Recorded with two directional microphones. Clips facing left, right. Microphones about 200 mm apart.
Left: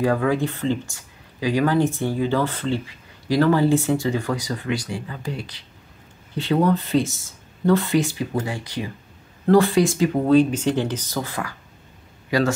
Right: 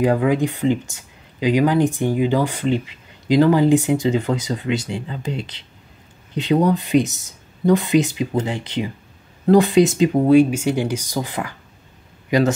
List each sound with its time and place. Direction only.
0.0 s speech: 15° right (ahead or behind)